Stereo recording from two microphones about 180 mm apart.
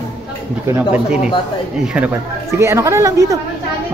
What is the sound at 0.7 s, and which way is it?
Speech, 10° right (ahead or behind).